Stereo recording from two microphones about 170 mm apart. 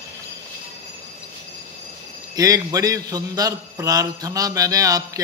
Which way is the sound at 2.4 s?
20° right (ahead or behind).